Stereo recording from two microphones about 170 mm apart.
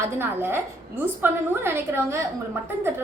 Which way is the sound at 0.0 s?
15° right (ahead or behind).